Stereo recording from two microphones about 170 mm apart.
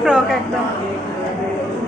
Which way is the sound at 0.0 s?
5° right (ahead or behind).